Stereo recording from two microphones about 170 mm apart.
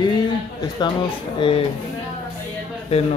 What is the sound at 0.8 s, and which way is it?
Speech, 25° left (ahead or behind).